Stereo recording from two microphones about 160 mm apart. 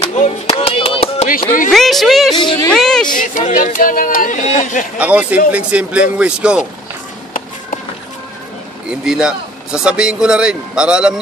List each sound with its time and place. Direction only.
0.1 s music: 45° left (ahead or behind)
1.7 s speech: centre (ahead or behind)
2.3 s speech: 30° left (ahead or behind)
2.7 s speech: 5° left (ahead or behind)
3.2 s speech: 55° left (ahead or behind)
4.9 s speech: 5° right (ahead or behind)
8.8 s speech: 5° right (ahead or behind)